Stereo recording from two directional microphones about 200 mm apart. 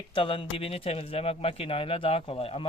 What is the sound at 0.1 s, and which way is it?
Speech, 25° left (ahead or behind).